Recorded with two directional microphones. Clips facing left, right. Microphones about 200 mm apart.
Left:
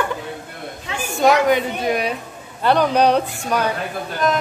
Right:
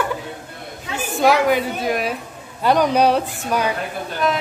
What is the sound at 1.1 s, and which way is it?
A woman's voice, 5° right (ahead or behind).